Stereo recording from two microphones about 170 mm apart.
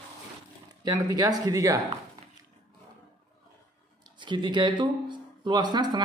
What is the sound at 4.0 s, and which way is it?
Speech, 25° right (ahead or behind).